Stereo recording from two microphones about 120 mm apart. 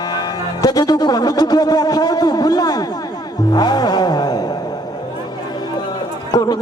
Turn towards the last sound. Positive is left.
turn(degrees=35)  # may be behind; listen again after turning